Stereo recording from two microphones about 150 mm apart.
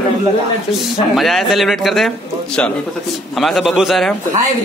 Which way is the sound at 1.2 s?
Centre (ahead or behind).